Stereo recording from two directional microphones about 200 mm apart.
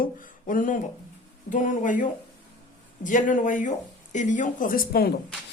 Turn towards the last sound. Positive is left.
turn(degrees=50)  # may be behind; listen again after turning